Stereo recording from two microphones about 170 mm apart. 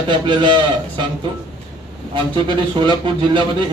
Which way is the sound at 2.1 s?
30° right (ahead or behind).